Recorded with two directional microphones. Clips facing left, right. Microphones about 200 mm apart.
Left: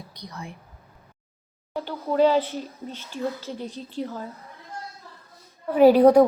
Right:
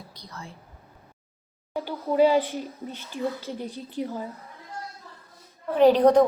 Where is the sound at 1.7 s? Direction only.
10° right (ahead or behind).